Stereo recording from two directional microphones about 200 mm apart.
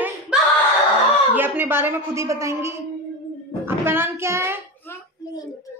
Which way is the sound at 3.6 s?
10° right (ahead or behind).